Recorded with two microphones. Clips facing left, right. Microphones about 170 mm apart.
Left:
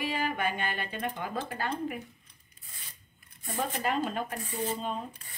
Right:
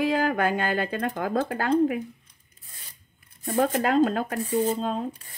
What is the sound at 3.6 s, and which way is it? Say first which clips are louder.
Speech: right 9 dB; 85° right.